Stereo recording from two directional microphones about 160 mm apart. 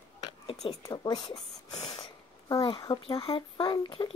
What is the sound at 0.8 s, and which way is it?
Speech, 25° left (ahead or behind).